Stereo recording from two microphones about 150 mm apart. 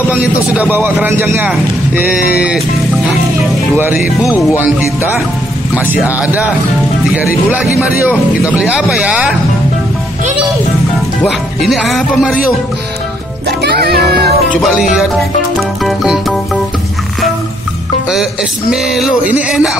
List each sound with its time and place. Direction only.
0.1 s speech: 10° right (ahead or behind)
3.7 s speech: 15° right (ahead or behind)
11.2 s speech: centre (ahead or behind)
13.5 s music: 90° right
14.7 s speech: 5° right (ahead or behind)
15.8 s music: centre (ahead or behind)
18.7 s speech: 5° right (ahead or behind)